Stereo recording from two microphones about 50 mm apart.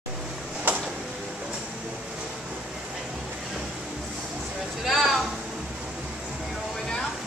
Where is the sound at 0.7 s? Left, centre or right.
Right.